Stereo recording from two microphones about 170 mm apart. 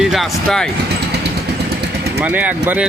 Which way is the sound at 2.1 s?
10° right (ahead or behind).